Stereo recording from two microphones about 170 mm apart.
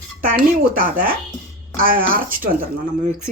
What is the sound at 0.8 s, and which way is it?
Speech, 55° right (ahead or behind).